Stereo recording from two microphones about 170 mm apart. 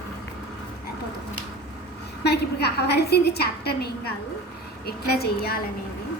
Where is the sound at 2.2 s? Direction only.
70° left (ahead or behind).